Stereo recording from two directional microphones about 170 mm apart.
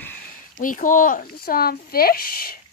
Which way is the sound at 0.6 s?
50° left (ahead or behind).